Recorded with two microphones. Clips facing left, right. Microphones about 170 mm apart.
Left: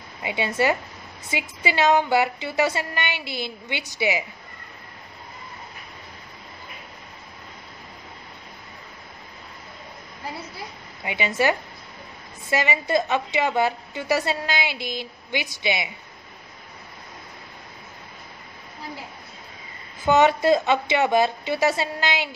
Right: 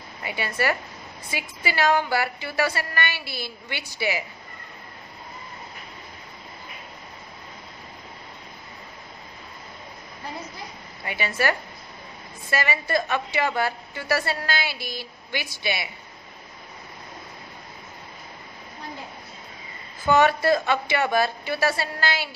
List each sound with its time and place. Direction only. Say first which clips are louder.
0.2 s a woman's voice: left 4 dB; 20° left (ahead or behind)
11.1 s a woman's voice: left 3 dB; 20° left (ahead or behind)
20.1 s a woman's voice: left 2 dB; 20° left (ahead or behind)